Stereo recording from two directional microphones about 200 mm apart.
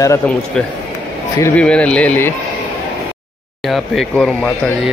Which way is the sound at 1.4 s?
5° left (ahead or behind).